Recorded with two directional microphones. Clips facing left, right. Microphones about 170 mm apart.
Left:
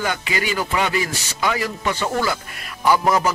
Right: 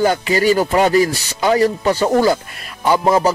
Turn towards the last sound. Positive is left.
turn(degrees=-30)  # may be behind; listen again after turning